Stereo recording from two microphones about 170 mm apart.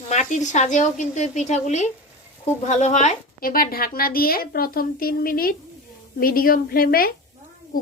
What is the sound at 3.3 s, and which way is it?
A woman's voice, 60° left (ahead or behind).